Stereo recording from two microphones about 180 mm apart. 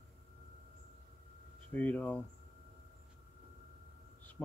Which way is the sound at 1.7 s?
10° left (ahead or behind).